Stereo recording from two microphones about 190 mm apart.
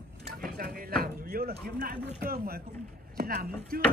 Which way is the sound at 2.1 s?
55° right (ahead or behind).